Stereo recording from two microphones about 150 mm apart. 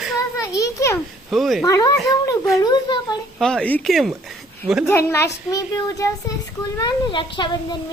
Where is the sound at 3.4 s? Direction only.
5° left (ahead or behind).